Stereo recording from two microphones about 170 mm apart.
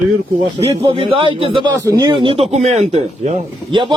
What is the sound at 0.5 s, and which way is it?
Speech, 30° right (ahead or behind).